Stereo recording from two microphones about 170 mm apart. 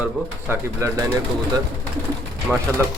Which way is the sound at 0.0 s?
10° right (ahead or behind).